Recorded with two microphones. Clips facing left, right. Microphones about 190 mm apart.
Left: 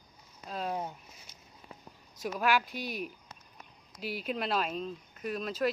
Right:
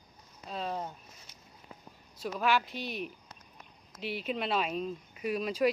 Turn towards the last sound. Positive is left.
turn(degrees=-10)  # may be behind; listen again after turning